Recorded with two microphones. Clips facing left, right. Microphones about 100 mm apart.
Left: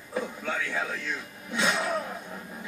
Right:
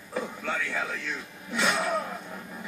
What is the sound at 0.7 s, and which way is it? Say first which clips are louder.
Music: left 1 dB; 15° left (ahead or behind).